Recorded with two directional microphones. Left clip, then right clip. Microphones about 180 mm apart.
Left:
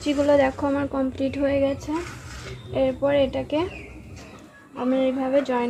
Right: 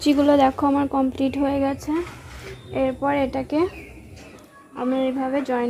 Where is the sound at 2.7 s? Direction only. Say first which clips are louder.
Left 1 dB; 35° right (ahead or behind).